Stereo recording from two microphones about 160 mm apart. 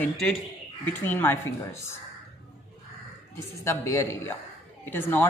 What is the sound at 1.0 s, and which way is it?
Speech, 10° left (ahead or behind).